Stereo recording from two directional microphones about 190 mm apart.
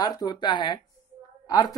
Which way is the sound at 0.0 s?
20° left (ahead or behind).